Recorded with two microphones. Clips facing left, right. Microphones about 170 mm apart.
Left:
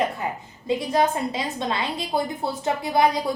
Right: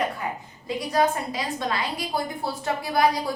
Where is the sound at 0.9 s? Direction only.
25° left (ahead or behind).